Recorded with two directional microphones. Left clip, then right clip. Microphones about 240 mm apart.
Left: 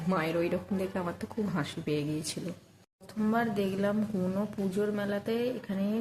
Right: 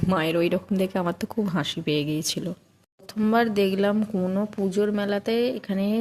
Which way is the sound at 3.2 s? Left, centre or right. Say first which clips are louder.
Right 8 dB; right.